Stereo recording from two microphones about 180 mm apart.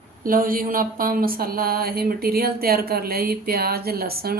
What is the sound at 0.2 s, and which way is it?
Speech, 50° right (ahead or behind).